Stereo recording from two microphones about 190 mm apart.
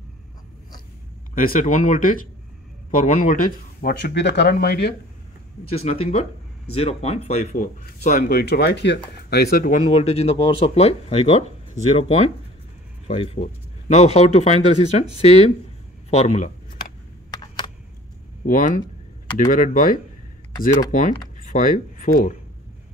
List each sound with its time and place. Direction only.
1.3 s speech: 45° left (ahead or behind)
5.8 s speech: 30° left (ahead or behind)
13.0 s speech: 30° left (ahead or behind)
17.3 s a sound: 20° left (ahead or behind)
18.4 s speech: 45° left (ahead or behind)